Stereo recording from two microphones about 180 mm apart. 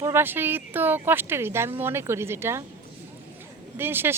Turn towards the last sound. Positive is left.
turn(degrees=-10)  # may be behind; listen again after turning